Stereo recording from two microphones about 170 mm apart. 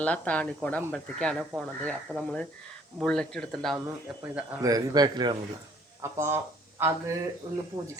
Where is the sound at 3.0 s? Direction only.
5° left (ahead or behind).